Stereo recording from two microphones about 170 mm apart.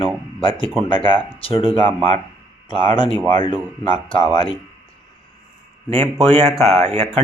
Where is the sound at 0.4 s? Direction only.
30° left (ahead or behind).